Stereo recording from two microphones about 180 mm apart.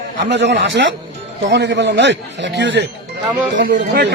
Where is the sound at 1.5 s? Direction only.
70° right (ahead or behind).